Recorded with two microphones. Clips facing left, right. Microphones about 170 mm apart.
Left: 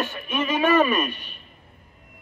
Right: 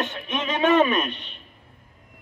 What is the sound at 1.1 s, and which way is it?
Speech, 25° right (ahead or behind).